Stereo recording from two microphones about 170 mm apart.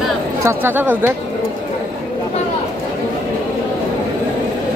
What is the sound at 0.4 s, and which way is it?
Speech, 15° right (ahead or behind).